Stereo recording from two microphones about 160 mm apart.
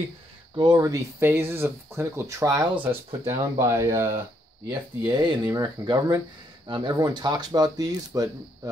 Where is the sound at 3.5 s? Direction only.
20° right (ahead or behind).